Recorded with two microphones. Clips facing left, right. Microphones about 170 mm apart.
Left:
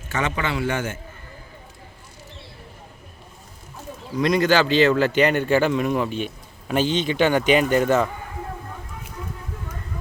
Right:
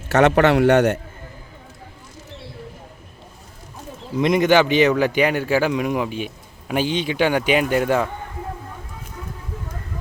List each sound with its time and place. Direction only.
0.1 s a man's voice: 70° right (ahead or behind)
4.2 s speech: 20° right (ahead or behind)